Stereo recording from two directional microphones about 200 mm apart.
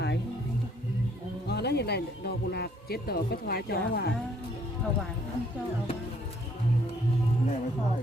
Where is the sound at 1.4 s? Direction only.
55° left (ahead or behind).